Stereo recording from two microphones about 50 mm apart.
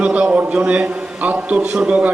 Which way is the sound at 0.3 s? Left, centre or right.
Right.